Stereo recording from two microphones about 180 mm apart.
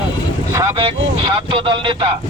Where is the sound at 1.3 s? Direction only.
30° right (ahead or behind).